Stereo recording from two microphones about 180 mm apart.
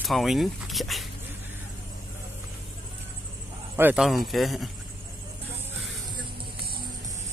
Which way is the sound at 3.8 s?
10° right (ahead or behind).